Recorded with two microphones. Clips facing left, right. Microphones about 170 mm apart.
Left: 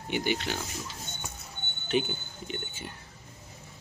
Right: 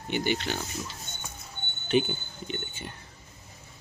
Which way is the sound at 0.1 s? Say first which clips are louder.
Right 1 dB; 5° left (ahead or behind).